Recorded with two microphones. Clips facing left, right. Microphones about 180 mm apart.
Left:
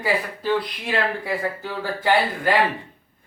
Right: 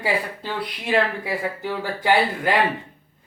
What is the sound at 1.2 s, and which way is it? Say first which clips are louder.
Speech: even; 15° right (ahead or behind).